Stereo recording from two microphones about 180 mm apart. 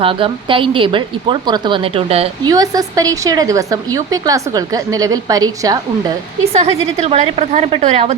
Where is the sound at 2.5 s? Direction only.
20° right (ahead or behind).